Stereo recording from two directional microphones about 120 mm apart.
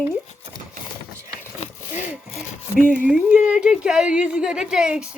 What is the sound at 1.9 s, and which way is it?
Sawing, 15° right (ahead or behind).